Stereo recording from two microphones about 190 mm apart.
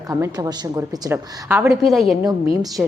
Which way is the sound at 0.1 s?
20° right (ahead or behind).